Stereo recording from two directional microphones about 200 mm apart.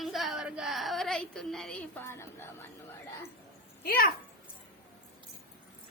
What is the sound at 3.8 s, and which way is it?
Speech, 50° left (ahead or behind).